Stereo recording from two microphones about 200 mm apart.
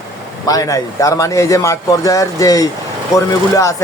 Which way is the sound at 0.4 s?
20° left (ahead or behind).